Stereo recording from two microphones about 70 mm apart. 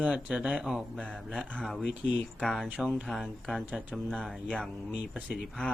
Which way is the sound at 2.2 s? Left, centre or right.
Centre.